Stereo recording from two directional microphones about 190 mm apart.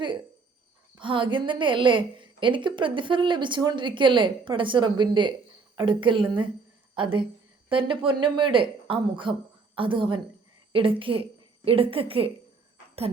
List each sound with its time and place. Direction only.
0.9 s a woman's voice: 25° right (ahead or behind)